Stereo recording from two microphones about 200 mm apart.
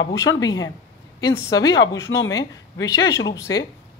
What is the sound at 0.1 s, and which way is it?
Speech, 15° left (ahead or behind).